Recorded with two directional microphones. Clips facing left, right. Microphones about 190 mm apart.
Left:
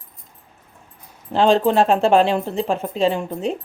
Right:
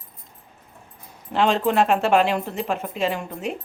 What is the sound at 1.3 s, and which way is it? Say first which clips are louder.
Speech: left 4 dB; 35° left (ahead or behind).